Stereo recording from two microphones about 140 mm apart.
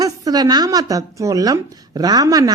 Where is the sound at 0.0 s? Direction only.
30° right (ahead or behind).